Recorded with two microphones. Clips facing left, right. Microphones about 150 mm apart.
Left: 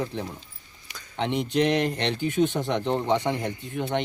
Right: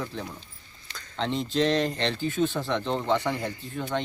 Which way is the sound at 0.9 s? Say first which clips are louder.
Left 2 dB; 15° left (ahead or behind).